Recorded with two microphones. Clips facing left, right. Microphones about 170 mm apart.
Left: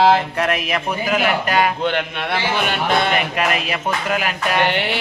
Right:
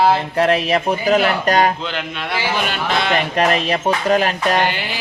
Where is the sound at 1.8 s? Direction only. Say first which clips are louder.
Left 4 dB; 60° left (ahead or behind).